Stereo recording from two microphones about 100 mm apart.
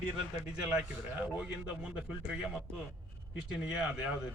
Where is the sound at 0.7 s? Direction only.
10° right (ahead or behind).